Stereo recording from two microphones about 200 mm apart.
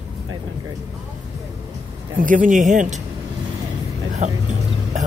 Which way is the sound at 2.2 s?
40° right (ahead or behind).